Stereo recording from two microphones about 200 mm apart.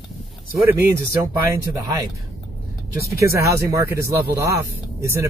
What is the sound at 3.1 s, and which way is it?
Speech, 15° right (ahead or behind).